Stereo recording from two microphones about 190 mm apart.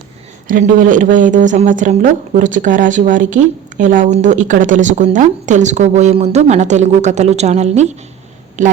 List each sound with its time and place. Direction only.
0.4 s a woman's voice: 45° right (ahead or behind)